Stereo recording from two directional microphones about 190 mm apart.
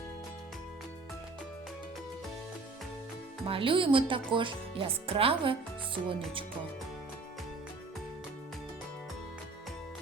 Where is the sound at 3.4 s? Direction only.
30° right (ahead or behind).